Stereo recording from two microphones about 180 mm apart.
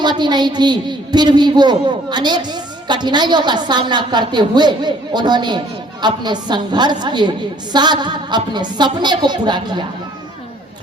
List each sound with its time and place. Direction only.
0.0 s a woman's voice: 25° right (ahead or behind)